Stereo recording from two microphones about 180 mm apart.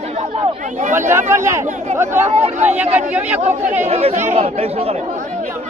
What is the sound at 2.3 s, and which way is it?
Speech, 40° right (ahead or behind).